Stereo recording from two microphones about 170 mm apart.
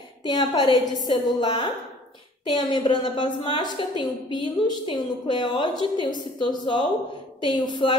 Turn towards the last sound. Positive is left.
turn(degrees=25)  # may be behind; listen again after turning